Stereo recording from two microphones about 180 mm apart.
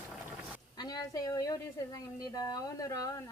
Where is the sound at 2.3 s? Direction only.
20° left (ahead or behind).